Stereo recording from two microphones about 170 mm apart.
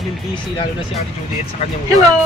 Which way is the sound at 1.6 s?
35° left (ahead or behind).